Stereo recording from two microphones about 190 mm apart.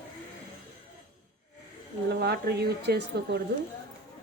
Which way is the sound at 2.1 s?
60° right (ahead or behind).